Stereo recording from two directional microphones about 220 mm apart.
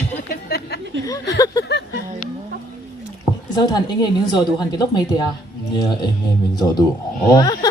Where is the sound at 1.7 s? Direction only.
50° left (ahead or behind).